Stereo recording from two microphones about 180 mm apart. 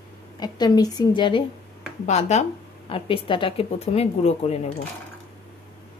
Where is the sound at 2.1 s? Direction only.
40° left (ahead or behind).